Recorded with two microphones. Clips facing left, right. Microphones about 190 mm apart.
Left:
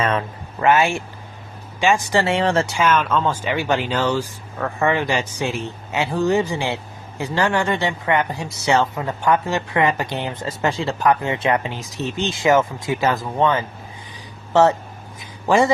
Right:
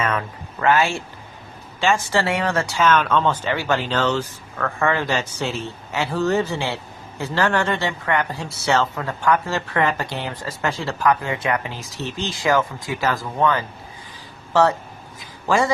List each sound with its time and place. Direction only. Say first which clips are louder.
0.0 s speech: left 2 dB; 30° left (ahead or behind)
0.6 s speech: left 2 dB; 20° left (ahead or behind)
2.7 s speech: even; 10° left (ahead or behind)
15.2 s a sound: left 3 dB; 20° left (ahead or behind)